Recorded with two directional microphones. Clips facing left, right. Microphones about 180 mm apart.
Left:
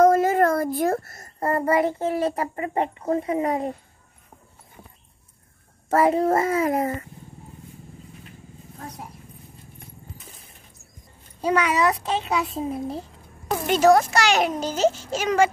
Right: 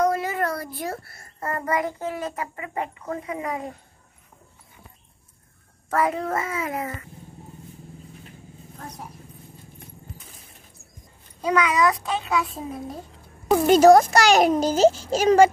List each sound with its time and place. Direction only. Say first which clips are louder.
0.0 s a child's voice: left 6 dB; 45° left (ahead or behind)
5.9 s a child's voice: left 5 dB; 30° left (ahead or behind)
11.4 s a child's voice: even; 30° left (ahead or behind)
13.5 s a child's voice: right 4 dB; 40° right (ahead or behind)